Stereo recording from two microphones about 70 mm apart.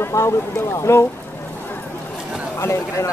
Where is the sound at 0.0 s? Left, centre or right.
Left.